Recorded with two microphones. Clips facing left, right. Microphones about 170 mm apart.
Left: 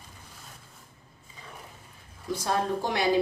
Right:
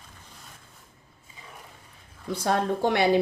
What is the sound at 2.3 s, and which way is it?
Speech, 60° right (ahead or behind).